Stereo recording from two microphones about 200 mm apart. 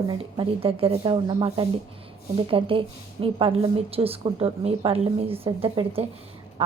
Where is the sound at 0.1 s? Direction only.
25° right (ahead or behind).